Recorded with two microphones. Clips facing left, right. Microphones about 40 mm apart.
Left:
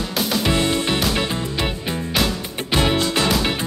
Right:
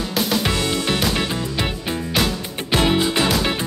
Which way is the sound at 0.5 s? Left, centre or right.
Left.